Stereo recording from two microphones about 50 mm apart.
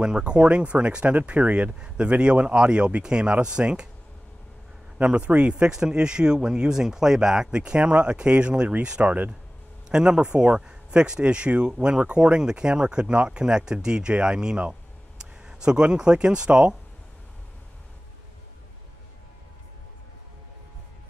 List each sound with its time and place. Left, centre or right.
0.0 s speech: centre
4.9 s speech: right
9.8 s speech: centre